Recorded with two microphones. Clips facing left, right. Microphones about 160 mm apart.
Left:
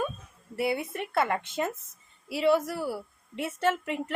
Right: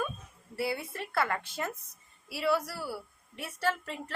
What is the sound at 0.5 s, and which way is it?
A woman's voice, 20° left (ahead or behind).